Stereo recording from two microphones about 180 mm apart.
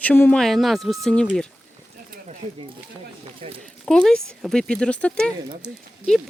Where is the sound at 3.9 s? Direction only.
5° left (ahead or behind).